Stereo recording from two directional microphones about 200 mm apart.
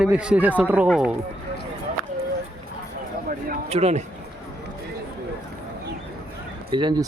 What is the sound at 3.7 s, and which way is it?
Speech, 30° right (ahead or behind).